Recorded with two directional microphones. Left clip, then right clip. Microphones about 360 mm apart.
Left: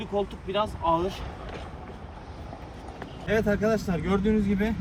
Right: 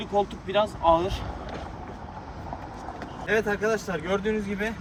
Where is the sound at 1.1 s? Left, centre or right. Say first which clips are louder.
Right 3 dB; right.